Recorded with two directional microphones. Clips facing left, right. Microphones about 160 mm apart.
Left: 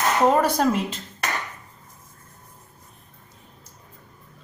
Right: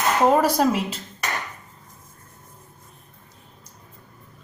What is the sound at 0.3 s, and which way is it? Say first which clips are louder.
Speech: right 2 dB; 5° right (ahead or behind).